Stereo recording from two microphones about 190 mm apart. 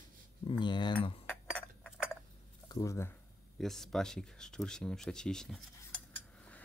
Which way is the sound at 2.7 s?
20° left (ahead or behind).